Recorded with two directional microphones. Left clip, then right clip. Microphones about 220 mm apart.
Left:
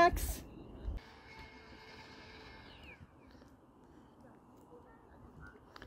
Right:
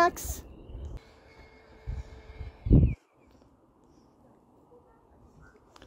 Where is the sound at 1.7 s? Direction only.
25° left (ahead or behind).